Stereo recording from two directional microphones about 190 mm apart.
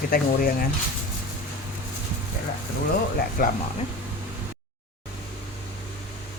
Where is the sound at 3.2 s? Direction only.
45° left (ahead or behind).